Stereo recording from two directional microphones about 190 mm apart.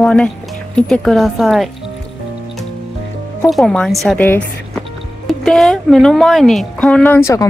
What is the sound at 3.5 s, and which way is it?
Speech, 5° left (ahead or behind).